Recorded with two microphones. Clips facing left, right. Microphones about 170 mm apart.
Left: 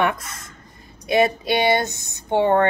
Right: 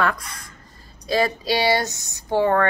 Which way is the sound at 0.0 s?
25° left (ahead or behind).